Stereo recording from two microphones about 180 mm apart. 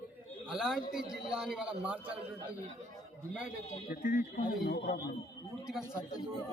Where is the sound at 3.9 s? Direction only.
50° left (ahead or behind).